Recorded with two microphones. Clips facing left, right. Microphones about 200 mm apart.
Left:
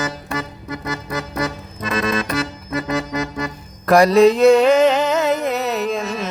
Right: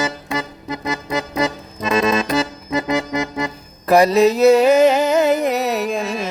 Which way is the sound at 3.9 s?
5° right (ahead or behind).